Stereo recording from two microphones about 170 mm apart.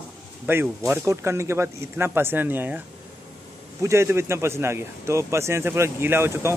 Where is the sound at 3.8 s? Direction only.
15° right (ahead or behind).